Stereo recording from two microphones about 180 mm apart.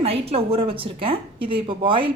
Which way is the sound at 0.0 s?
30° right (ahead or behind).